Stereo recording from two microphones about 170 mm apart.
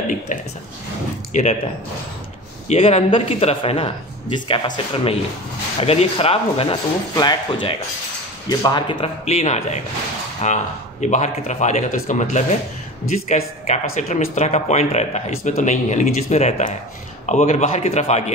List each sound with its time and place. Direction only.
1.3 s speech: 40° left (ahead or behind)
2.7 s speech: 35° left (ahead or behind)
13.7 s speech: 40° left (ahead or behind)